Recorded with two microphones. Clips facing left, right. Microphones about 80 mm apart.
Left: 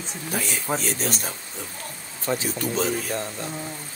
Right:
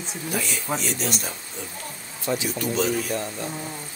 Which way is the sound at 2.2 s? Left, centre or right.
Left.